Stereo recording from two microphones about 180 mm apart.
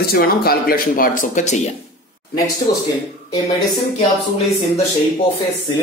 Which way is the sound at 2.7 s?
55° left (ahead or behind).